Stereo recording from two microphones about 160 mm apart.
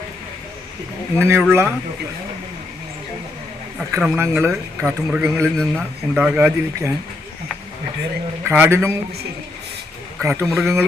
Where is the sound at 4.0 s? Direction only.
10° right (ahead or behind).